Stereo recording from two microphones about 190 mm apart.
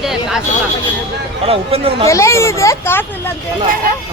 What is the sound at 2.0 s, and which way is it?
Speech, 15° left (ahead or behind).